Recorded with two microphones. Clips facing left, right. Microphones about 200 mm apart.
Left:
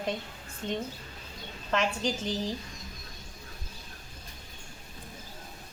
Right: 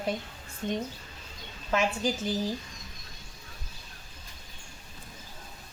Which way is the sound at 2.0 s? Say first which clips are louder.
Right 2 dB; 5° right (ahead or behind).